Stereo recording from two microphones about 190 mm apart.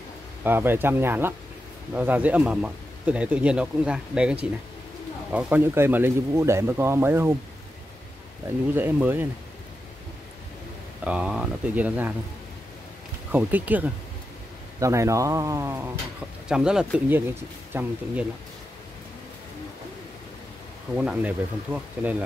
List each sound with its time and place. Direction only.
0.4 s speech: 10° right (ahead or behind)
8.5 s speech: 10° right (ahead or behind)
11.1 s speech: 5° right (ahead or behind)
13.3 s speech: 10° right (ahead or behind)
20.9 s speech: 5° right (ahead or behind)